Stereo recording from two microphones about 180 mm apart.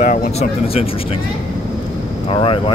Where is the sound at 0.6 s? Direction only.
35° left (ahead or behind).